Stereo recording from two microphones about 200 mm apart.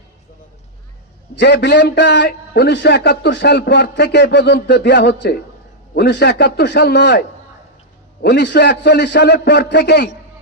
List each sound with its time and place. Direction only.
1.4 s a man's voice: 55° left (ahead or behind)
8.2 s a man's voice: 60° left (ahead or behind)